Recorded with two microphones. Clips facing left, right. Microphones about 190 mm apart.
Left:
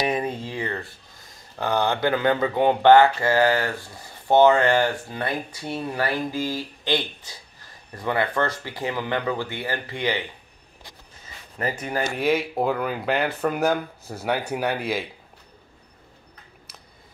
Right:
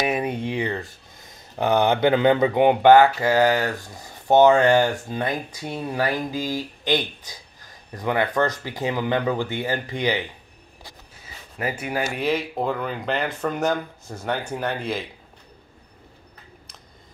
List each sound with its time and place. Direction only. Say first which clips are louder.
0.0 s a sound: right 1 dB; 10° right (ahead or behind)
1.6 s speech: right 4 dB; 20° right (ahead or behind)
11.5 s speech: even; 10° right (ahead or behind); by 15.0 s 10° left (ahead or behind)